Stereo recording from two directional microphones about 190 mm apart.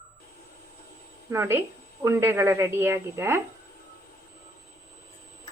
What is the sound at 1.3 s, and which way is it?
A woman's voice, 15° right (ahead or behind).